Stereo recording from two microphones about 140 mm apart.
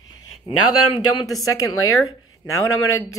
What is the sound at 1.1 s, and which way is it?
Speech, 25° left (ahead or behind).